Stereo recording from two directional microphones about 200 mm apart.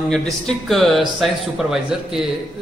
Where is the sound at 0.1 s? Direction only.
5° left (ahead or behind).